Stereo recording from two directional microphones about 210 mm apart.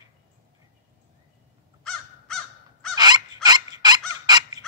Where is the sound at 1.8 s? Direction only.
Centre (ahead or behind).